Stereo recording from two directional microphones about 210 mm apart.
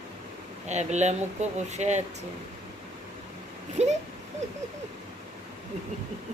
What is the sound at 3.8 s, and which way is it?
Speech, 35° right (ahead or behind).